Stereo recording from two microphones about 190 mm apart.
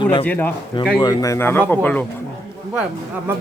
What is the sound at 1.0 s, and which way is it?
Speech, 20° left (ahead or behind).